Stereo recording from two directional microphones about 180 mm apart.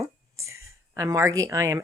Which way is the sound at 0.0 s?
15° right (ahead or behind).